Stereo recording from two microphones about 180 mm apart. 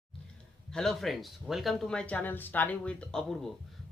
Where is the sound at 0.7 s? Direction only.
Centre (ahead or behind).